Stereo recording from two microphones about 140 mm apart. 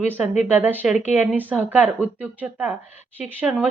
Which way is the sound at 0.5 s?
15° right (ahead or behind).